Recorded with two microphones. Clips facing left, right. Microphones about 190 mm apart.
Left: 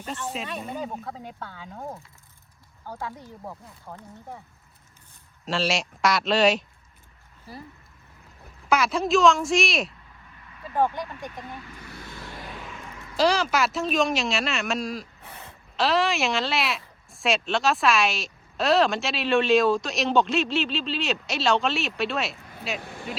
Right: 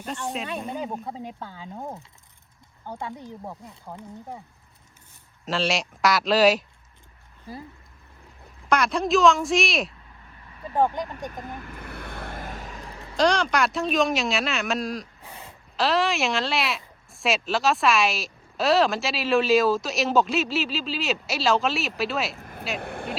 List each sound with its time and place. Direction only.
0.3 s speech: centre (ahead or behind)
1.6 s speech: 20° right (ahead or behind)
5.5 s speech: centre (ahead or behind)
8.7 s speech: centre (ahead or behind)
11.0 s vehicle: 45° right (ahead or behind)
13.1 s speech: 5° left (ahead or behind)
15.2 s a sound: 15° right (ahead or behind)
15.7 s speech: centre (ahead or behind)
22.4 s a sound: 55° right (ahead or behind)
22.8 s speech: 55° right (ahead or behind)